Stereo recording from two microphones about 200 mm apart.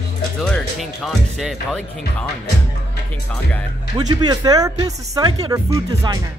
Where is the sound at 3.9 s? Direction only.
20° right (ahead or behind).